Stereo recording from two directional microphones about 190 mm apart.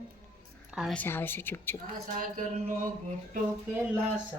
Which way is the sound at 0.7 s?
Centre (ahead or behind).